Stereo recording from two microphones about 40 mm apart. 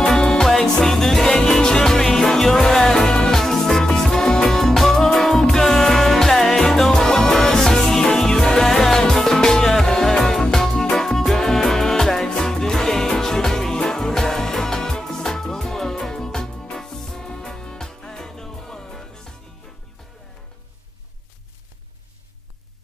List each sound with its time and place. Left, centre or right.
0.1 s music: centre